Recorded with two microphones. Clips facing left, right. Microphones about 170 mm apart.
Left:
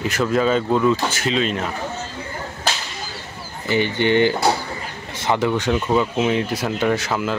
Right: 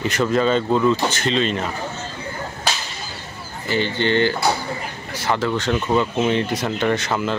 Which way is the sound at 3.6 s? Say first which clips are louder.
Left 2 dB; 15° left (ahead or behind).